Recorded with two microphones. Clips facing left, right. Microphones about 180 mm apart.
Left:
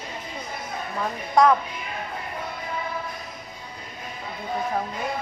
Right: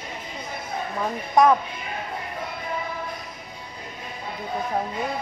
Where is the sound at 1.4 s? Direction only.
20° right (ahead or behind).